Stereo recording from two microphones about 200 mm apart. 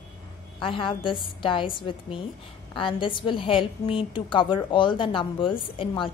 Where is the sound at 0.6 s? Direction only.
25° left (ahead or behind).